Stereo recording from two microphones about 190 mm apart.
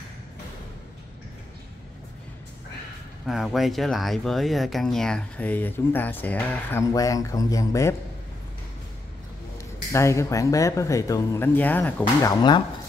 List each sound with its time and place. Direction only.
3.3 s speech: centre (ahead or behind); by 7.9 s 15° left (ahead or behind)
9.9 s speech: 15° left (ahead or behind)